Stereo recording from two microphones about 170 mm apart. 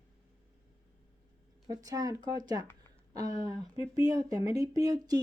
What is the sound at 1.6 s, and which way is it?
Speech, 20° right (ahead or behind).